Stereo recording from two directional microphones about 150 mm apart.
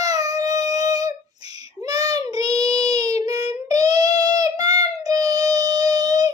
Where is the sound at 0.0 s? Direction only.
25° right (ahead or behind).